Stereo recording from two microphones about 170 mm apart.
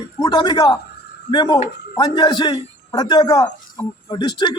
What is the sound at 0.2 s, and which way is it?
A man's voice, 25° left (ahead or behind).